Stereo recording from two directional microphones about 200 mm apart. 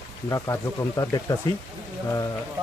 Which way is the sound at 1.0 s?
20° left (ahead or behind).